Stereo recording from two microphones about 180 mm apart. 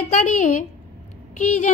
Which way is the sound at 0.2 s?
45° left (ahead or behind).